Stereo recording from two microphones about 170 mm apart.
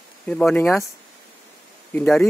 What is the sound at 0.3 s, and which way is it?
Speech, 5° left (ahead or behind).